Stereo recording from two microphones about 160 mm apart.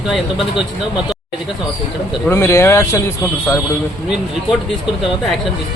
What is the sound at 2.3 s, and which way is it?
Speech, 15° left (ahead or behind).